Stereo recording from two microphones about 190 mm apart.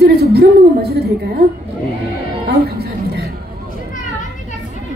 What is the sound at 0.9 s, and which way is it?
Speech, 55° right (ahead or behind).